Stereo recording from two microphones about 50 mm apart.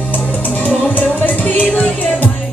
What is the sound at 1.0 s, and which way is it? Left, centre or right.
Music, left.